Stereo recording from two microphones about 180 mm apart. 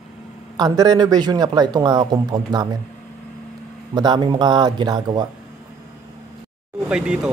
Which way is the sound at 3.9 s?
25° right (ahead or behind).